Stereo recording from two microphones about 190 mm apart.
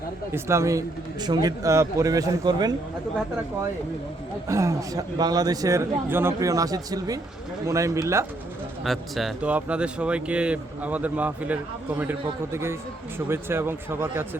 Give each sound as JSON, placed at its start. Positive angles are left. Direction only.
{"t": 0.3, "sound": "speech", "side_deg": -15}
{"t": 4.4, "sound": "speech", "side_deg": -15}
{"t": 8.8, "sound": "speech", "side_deg": 0}